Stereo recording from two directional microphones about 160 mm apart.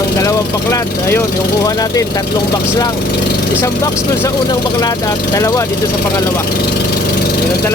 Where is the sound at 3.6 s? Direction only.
20° left (ahead or behind).